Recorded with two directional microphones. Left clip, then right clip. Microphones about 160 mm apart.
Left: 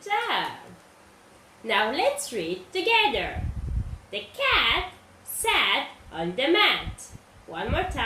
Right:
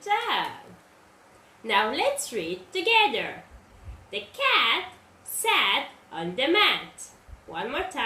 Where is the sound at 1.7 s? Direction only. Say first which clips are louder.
Even; 15° right (ahead or behind).